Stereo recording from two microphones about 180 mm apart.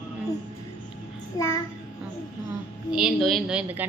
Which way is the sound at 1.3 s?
20° left (ahead or behind).